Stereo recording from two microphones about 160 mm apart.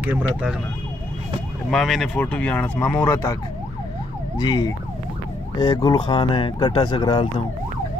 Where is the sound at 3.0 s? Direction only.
25° left (ahead or behind).